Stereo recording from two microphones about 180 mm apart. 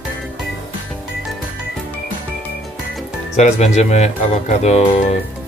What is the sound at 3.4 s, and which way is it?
Speech, 40° left (ahead or behind).